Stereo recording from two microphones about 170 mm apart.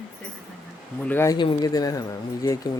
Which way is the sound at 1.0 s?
15° left (ahead or behind).